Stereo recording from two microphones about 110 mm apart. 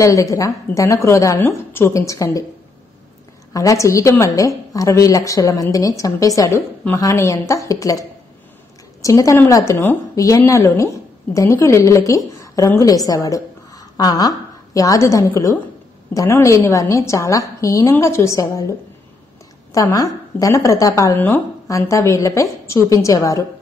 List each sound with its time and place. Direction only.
0.0 s a woman's voice: 30° left (ahead or behind)
3.5 s a woman's voice: 30° left (ahead or behind)
9.0 s a woman's voice: 30° left (ahead or behind)